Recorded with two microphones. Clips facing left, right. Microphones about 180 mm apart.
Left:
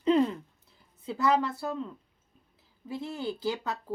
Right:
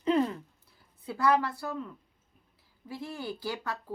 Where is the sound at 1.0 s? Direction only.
20° left (ahead or behind).